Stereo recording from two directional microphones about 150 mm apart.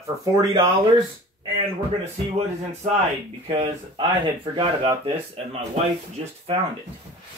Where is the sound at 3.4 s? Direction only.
35° right (ahead or behind).